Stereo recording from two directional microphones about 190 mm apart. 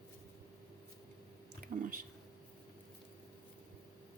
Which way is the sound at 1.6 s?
50° right (ahead or behind).